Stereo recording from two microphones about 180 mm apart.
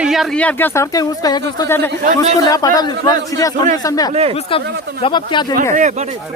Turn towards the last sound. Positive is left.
turn(degrees=-40)  # may be behind; listen again after turning